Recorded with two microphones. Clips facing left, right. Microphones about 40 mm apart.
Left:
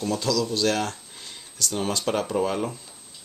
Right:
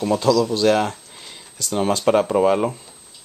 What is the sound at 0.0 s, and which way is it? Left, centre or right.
Speech, right.